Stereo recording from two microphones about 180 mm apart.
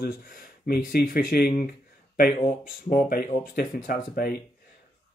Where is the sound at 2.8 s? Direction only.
55° left (ahead or behind).